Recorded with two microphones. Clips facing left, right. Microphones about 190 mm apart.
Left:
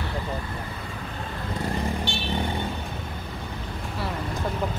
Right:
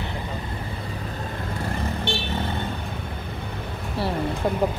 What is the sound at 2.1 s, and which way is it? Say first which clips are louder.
Vehicle: right 4 dB; 60° right (ahead or behind).